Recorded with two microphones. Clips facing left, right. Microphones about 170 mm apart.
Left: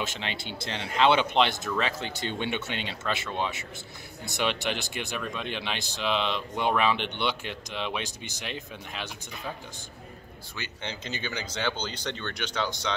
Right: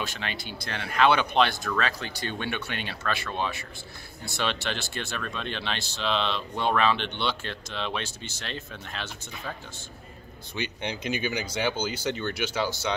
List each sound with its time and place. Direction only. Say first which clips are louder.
0.0 s speech: even; 20° left (ahead or behind)
10.5 s speech: right 6 dB; 15° right (ahead or behind)